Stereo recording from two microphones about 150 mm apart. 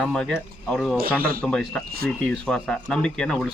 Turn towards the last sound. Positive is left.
turn(degrees=5)  # may be behind; listen again after turning